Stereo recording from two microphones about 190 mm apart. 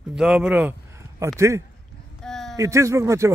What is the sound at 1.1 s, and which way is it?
Speech, 15° right (ahead or behind).